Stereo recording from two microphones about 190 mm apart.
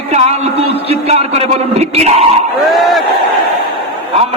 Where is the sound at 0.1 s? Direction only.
35° right (ahead or behind).